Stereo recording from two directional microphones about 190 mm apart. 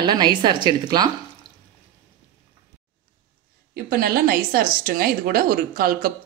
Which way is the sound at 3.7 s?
50° right (ahead or behind).